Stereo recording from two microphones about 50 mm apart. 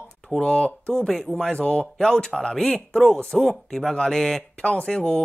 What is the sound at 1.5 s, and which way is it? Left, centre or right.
Speech, centre.